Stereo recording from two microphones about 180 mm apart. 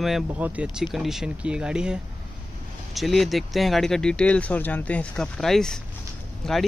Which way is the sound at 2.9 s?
Centre (ahead or behind).